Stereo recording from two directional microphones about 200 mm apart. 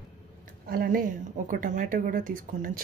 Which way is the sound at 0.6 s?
45° right (ahead or behind).